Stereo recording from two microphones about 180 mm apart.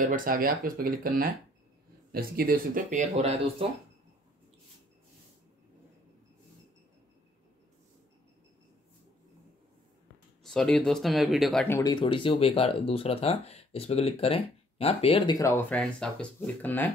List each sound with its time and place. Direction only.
0.0 s speech: 50° right (ahead or behind)
10.4 s speech: 5° left (ahead or behind)
11.6 s speech: 15° left (ahead or behind)
15.3 s speech: 15° left (ahead or behind)
15.7 s speech: 5° left (ahead or behind)